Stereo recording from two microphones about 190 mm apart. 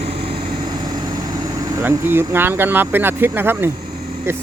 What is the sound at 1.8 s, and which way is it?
Speech, 10° right (ahead or behind).